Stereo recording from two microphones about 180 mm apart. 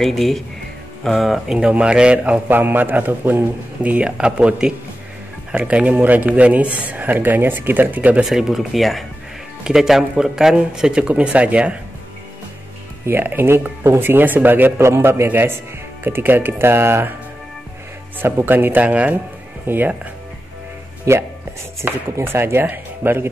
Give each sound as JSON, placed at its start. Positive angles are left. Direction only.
{"t": 0.0, "sound": "a man's voice", "side_deg": 0}
{"t": 13.0, "sound": "a man's voice", "side_deg": -10}
{"t": 18.2, "sound": "a man's voice", "side_deg": -10}
{"t": 21.1, "sound": "a man's voice", "side_deg": -15}